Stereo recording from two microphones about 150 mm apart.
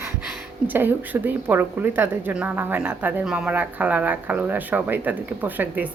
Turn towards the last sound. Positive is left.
turn(degrees=-10)  # may be behind; listen again after turning